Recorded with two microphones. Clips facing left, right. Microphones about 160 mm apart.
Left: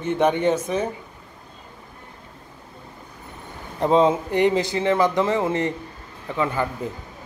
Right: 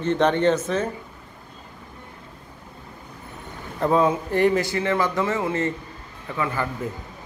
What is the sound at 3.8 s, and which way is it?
A man's voice, 20° left (ahead or behind).